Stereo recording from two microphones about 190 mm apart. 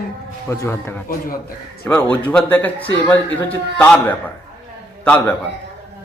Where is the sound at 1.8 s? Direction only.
5° left (ahead or behind).